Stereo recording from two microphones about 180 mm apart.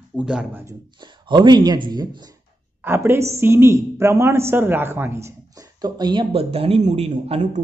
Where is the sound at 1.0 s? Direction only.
25° right (ahead or behind).